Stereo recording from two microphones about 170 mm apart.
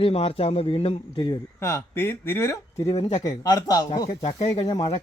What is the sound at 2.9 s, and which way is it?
Speech, 30° left (ahead or behind).